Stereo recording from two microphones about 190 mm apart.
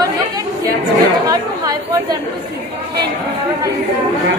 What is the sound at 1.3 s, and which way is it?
Chatter, 20° right (ahead or behind).